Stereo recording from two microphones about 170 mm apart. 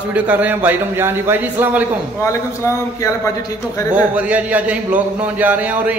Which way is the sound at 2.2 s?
15° left (ahead or behind).